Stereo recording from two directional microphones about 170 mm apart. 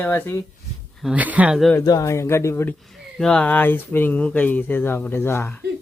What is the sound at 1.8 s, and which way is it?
Speech, 20° left (ahead or behind).